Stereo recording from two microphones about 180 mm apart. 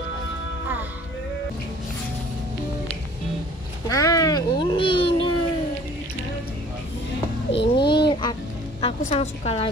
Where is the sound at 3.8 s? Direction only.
20° left (ahead or behind).